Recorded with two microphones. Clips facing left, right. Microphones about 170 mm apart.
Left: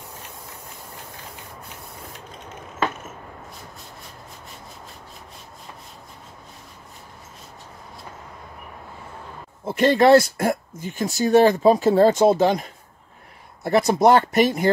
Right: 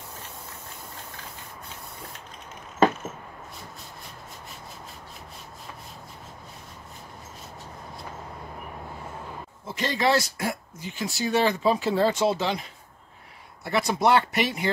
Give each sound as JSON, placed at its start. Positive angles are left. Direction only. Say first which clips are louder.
{"t": 9.7, "sound": "speech", "louder": "left 10 dB", "side_deg": 55}
{"t": 13.7, "sound": "speech", "louder": "left 6 dB", "side_deg": 45}